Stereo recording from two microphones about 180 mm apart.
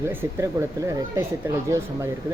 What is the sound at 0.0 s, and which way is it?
Speech, 15° right (ahead or behind).